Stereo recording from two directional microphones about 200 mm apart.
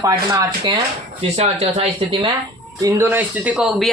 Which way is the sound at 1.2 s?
30° right (ahead or behind).